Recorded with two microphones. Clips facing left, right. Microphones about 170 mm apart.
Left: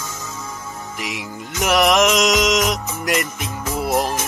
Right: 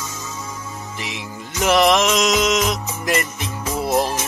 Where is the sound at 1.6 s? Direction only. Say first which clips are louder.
Even; 5° left (ahead or behind).